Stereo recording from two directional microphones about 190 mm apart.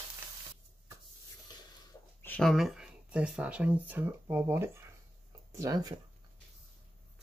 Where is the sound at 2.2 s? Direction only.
5° left (ahead or behind); by 5.9 s 20° right (ahead or behind).